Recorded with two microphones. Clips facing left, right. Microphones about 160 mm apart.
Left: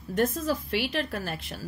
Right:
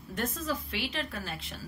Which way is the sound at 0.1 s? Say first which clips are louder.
Left 7 dB; 45° left (ahead or behind).